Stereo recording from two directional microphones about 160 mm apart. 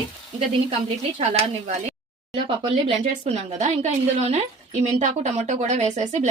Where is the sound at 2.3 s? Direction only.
35° right (ahead or behind).